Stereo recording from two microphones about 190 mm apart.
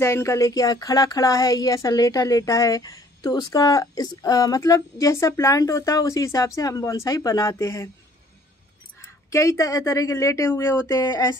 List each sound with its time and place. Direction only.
0.0 s a woman's voice: 15° left (ahead or behind)
9.0 s a woman's voice: 15° left (ahead or behind)